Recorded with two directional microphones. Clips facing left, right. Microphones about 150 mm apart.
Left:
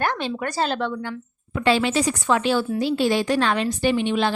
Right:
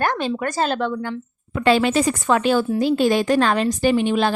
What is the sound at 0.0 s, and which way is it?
A woman's voice, 45° right (ahead or behind).